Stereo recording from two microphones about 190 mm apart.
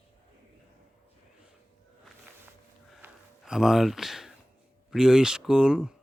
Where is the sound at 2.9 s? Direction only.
5° right (ahead or behind).